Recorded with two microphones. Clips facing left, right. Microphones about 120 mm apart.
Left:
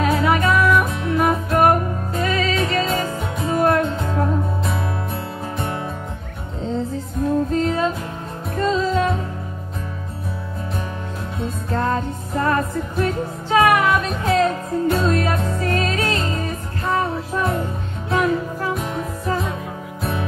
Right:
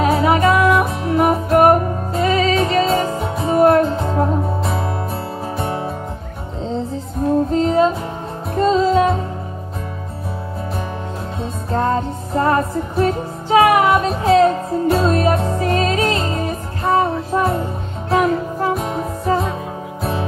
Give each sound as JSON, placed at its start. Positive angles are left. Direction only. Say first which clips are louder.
{"t": 0.0, "sound": "music", "louder": "right 4 dB", "side_deg": -25}
{"t": 7.2, "sound": "music", "louder": "right 3 dB", "side_deg": -25}
{"t": 11.7, "sound": "music", "louder": "right 4 dB", "side_deg": -25}
{"t": 18.7, "sound": "music", "louder": "right 4 dB", "side_deg": -35}